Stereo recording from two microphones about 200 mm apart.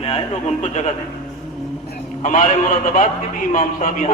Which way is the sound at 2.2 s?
40° left (ahead or behind).